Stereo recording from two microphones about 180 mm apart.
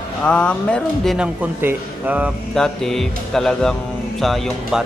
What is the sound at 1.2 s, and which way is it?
Speech, 10° right (ahead or behind).